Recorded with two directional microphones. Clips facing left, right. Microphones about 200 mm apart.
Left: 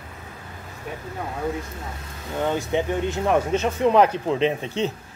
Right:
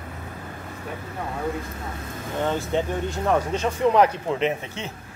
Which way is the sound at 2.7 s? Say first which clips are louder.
Left 2 dB; 20° left (ahead or behind).